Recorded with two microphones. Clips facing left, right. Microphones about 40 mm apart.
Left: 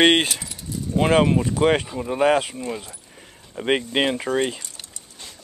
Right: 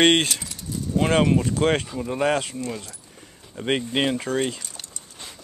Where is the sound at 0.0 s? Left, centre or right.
Centre.